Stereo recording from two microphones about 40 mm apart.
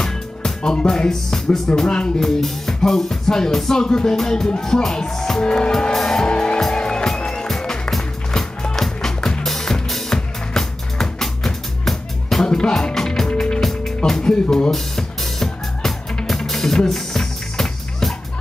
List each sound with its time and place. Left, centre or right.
0.0 s music: centre
5.4 s music: left
6.2 s music: left; by 12.4 s centre
12.4 s music: centre
14.2 s music: left
14.7 s music: centre